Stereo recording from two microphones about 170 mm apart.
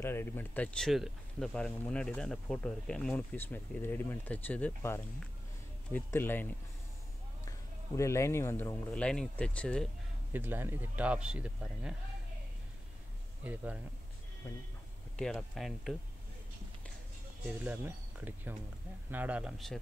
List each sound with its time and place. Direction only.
0.0 s speech: 15° left (ahead or behind)
8.9 s speech: 5° left (ahead or behind)
10.3 s speech: 10° right (ahead or behind)
13.4 s speech: 10° right (ahead or behind)
15.1 s speech: 5° left (ahead or behind)
17.5 s speech: 10° right (ahead or behind)